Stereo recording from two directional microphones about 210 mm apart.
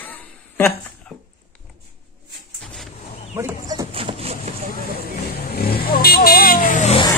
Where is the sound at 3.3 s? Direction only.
5° right (ahead or behind).